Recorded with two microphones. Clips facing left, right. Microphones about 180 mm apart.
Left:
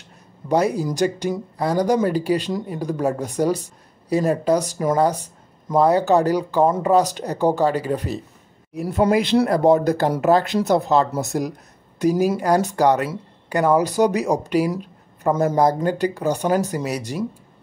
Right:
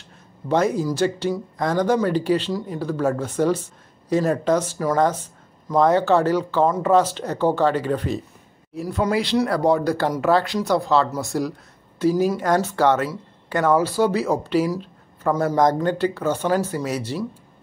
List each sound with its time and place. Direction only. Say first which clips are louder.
0.5 s speech: even; 10° left (ahead or behind)
8.7 s speech: left 4 dB; 25° left (ahead or behind)